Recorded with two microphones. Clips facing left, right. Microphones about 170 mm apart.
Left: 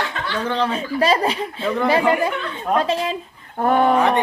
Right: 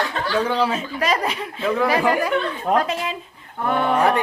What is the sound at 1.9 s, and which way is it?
Speech, 25° left (ahead or behind).